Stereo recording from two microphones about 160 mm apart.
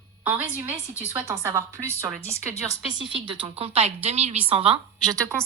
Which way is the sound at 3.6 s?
40° right (ahead or behind).